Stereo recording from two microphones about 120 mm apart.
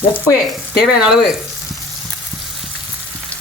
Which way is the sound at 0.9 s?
5° right (ahead or behind).